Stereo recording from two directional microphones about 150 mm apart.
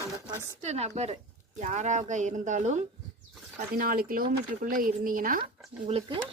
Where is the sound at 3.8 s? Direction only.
70° right (ahead or behind).